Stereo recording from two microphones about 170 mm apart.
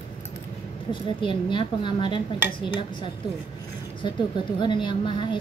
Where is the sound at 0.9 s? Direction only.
30° left (ahead or behind).